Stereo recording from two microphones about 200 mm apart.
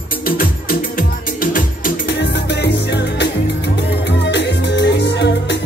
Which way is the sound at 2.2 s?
60° left (ahead or behind).